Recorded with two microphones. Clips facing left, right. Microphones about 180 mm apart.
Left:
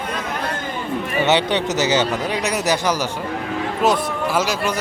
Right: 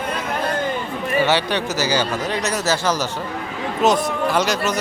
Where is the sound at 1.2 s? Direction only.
20° left (ahead or behind).